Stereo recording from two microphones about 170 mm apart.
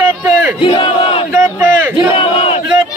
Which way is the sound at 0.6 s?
30° left (ahead or behind).